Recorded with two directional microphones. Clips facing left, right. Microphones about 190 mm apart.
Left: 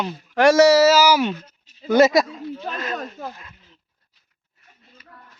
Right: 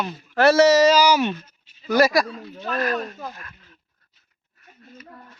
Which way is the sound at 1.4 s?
40° left (ahead or behind).